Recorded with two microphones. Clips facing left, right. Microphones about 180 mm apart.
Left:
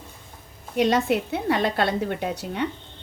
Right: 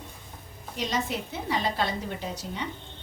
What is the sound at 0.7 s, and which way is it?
A woman's voice, 65° left (ahead or behind).